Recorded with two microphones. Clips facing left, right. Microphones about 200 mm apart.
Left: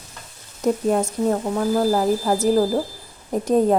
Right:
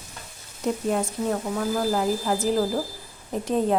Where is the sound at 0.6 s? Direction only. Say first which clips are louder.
Left 5 dB; 45° left (ahead or behind).